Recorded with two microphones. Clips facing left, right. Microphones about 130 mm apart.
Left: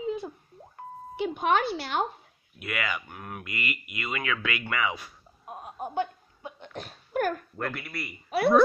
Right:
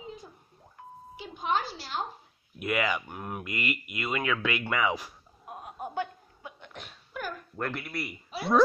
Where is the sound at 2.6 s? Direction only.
Centre (ahead or behind).